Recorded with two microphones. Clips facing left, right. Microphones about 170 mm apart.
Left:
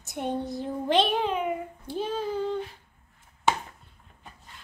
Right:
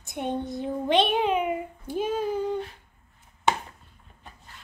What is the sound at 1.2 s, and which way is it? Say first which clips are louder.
A woman's voice: right 3 dB; 15° right (ahead or behind).